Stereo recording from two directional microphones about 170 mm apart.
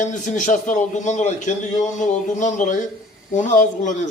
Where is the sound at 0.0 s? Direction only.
45° left (ahead or behind).